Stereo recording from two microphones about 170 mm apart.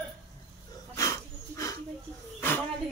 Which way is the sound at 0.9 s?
20° left (ahead or behind).